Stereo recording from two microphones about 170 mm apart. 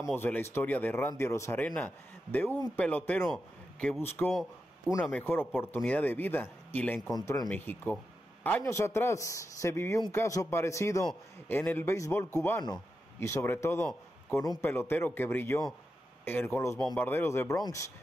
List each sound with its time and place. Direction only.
0.1 s speech: 10° left (ahead or behind)
4.4 s a man's voice: centre (ahead or behind)
5.2 s speech: 10° left (ahead or behind)
7.2 s speech: 20° left (ahead or behind)
7.4 s speech: 10° left (ahead or behind)